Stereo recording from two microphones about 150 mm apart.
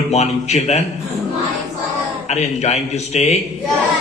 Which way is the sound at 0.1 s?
45° left (ahead or behind).